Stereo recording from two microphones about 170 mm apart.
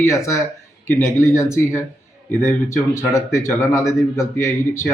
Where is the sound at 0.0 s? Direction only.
15° left (ahead or behind).